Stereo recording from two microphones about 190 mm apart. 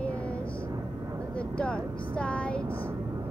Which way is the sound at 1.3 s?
5° left (ahead or behind).